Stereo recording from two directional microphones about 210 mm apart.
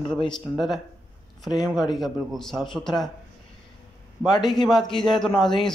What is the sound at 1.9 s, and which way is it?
Speech, centre (ahead or behind).